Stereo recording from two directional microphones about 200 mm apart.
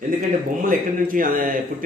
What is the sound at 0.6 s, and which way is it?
A man's voice, 45° right (ahead or behind).